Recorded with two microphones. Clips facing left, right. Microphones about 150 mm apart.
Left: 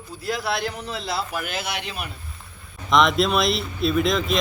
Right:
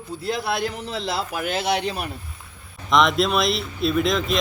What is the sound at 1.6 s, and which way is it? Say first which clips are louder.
Speech: right 7 dB; 35° right (ahead or behind).